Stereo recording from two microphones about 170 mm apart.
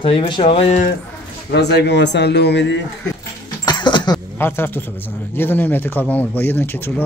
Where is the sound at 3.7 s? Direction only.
25° left (ahead or behind).